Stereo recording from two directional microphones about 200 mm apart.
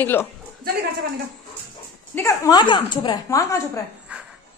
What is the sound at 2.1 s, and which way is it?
A woman's voice, 15° left (ahead or behind).